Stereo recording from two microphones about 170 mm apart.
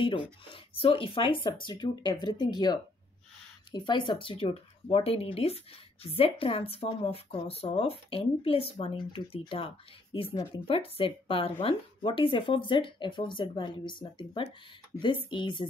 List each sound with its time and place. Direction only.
0.0 s speech: 30° left (ahead or behind)